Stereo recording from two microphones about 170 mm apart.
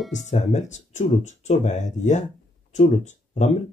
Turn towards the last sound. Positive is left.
turn(degrees=45)  # may be behind; listen again after turning